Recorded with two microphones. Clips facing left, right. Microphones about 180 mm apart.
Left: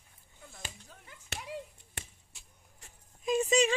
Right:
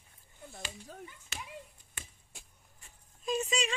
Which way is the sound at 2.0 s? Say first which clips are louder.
Left 4 dB; 70° left (ahead or behind).